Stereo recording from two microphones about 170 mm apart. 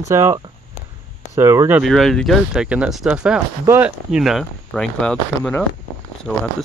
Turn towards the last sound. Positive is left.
turn(degrees=0)  # may be behind; listen again after turning